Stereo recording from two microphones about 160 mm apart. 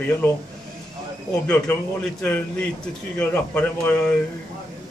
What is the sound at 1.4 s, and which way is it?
Speech, 10° left (ahead or behind).